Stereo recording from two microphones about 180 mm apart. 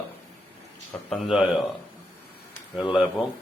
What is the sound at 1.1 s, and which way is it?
Speech, centre (ahead or behind).